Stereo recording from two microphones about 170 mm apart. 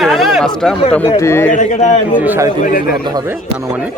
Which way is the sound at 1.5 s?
45° left (ahead or behind).